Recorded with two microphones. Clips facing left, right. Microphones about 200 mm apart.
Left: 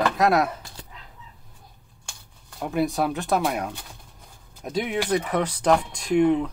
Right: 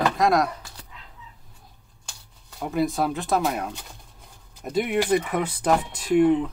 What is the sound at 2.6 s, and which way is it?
Speech, centre (ahead or behind).